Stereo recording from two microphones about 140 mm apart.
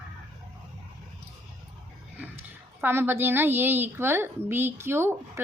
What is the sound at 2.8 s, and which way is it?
A woman's voice, 15° right (ahead or behind).